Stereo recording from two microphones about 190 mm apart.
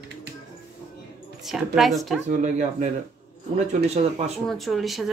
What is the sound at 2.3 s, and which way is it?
Speech, 40° right (ahead or behind).